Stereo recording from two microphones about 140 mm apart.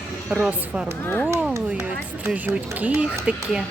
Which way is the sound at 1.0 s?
15° left (ahead or behind).